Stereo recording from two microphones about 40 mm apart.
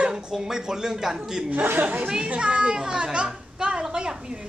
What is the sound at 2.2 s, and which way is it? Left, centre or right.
A woman's voice, right.